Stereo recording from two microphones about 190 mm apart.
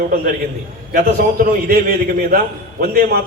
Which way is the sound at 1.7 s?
55° right (ahead or behind).